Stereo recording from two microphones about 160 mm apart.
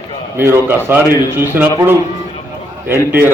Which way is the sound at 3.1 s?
10° right (ahead or behind).